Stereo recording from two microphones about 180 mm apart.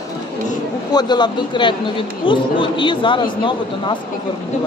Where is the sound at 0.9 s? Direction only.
25° left (ahead or behind).